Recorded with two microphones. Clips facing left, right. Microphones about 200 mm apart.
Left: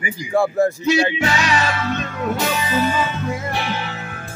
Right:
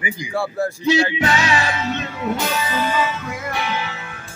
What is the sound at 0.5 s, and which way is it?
Speech, 20° left (ahead or behind).